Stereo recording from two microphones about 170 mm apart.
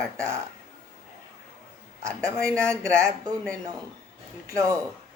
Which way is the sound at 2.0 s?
20° right (ahead or behind).